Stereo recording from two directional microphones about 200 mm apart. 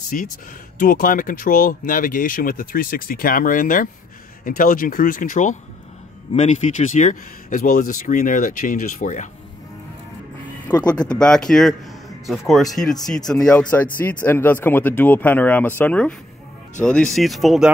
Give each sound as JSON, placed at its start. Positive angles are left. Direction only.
{"t": 0.1, "sound": "speech", "side_deg": 40}
{"t": 10.7, "sound": "speech", "side_deg": 20}
{"t": 11.1, "sound": "speech", "side_deg": 5}